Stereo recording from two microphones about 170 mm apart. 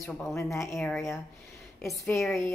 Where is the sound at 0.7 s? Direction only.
5° left (ahead or behind).